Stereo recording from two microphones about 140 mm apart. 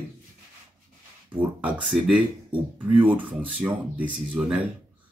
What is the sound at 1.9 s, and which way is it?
Speech, centre (ahead or behind).